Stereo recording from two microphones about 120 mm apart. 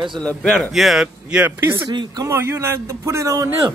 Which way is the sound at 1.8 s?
30° right (ahead or behind).